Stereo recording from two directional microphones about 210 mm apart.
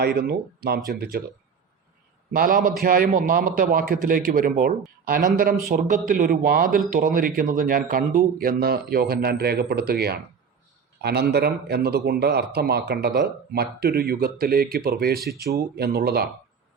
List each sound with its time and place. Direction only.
0.0 s speech: 50° right (ahead or behind)
2.3 s speech: 45° right (ahead or behind)